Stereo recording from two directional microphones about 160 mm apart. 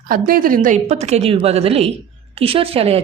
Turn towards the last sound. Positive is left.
turn(degrees=-40)  # may be behind; listen again after turning